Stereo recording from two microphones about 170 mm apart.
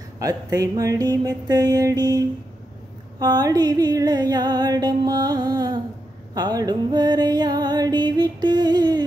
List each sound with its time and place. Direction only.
0.2 s music: 20° right (ahead or behind)